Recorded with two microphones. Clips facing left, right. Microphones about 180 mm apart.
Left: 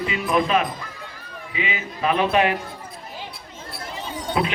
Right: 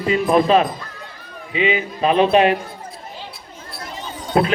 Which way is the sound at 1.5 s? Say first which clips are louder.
Right 9 dB; 25° right (ahead or behind).